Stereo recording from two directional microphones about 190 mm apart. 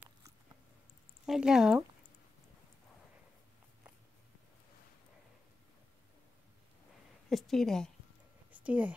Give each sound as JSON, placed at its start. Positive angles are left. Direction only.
{"t": 1.2, "sound": "speech", "side_deg": -5}
{"t": 7.2, "sound": "a woman's voice", "side_deg": 0}
{"t": 8.5, "sound": "a sound", "side_deg": -10}